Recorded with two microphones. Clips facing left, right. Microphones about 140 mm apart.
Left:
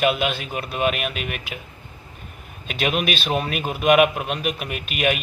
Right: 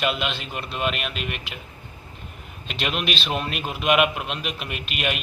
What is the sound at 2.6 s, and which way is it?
A man's voice, 5° left (ahead or behind).